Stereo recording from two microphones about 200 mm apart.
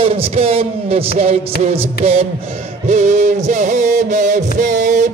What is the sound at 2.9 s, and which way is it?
Music, 35° right (ahead or behind).